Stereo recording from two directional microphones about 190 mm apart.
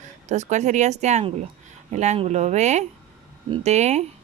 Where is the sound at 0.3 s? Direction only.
40° right (ahead or behind).